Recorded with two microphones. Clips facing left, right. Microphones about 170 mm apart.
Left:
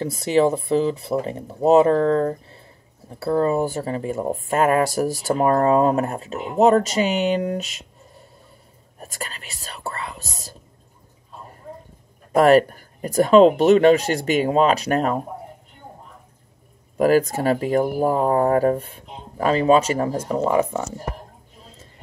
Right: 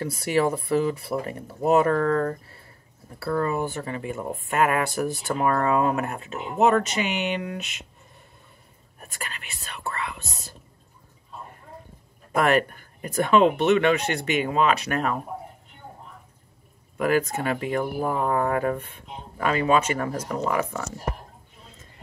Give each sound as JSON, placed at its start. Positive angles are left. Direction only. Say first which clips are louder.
{"t": 0.0, "sound": "speech", "louder": "left 5 dB", "side_deg": 25}
{"t": 9.0, "sound": "speech", "louder": "left 4 dB", "side_deg": 35}
{"t": 12.4, "sound": "speech", "louder": "left 7 dB", "side_deg": 35}
{"t": 16.9, "sound": "speech", "louder": "left 6 dB", "side_deg": 40}